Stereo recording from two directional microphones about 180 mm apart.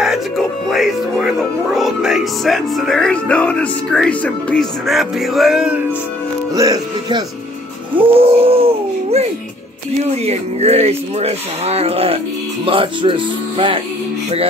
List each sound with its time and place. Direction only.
0.0 s speech: centre (ahead or behind)
6.5 s speech: 20° right (ahead or behind)
7.9 s a sound: 30° right (ahead or behind)
10.2 s speech: 35° right (ahead or behind)